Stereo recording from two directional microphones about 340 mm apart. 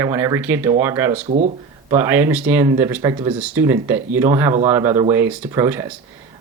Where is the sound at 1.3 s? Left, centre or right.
Centre.